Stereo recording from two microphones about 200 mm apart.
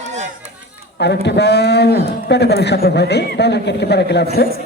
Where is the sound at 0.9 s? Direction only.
55° left (ahead or behind).